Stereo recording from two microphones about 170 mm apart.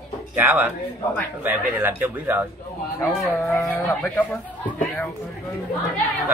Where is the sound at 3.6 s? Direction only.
15° left (ahead or behind).